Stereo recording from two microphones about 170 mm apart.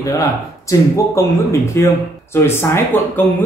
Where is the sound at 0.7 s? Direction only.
20° left (ahead or behind).